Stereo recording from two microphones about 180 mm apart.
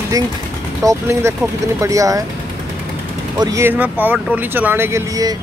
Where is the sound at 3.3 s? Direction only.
20° right (ahead or behind).